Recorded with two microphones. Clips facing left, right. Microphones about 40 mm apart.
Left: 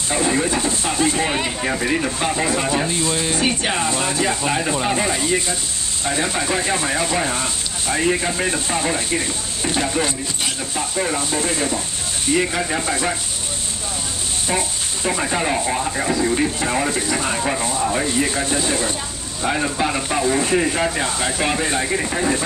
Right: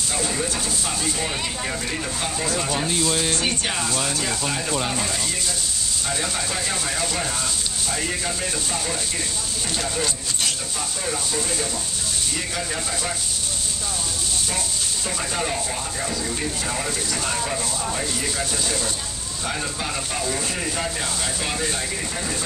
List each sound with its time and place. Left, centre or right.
0.1 s speech: left
15.0 s speech: left